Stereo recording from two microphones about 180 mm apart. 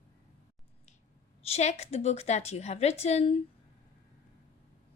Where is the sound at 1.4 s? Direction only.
35° left (ahead or behind).